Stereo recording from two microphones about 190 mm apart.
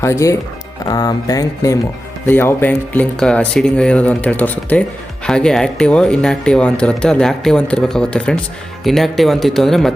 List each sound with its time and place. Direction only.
0.0 s speech: 15° left (ahead or behind)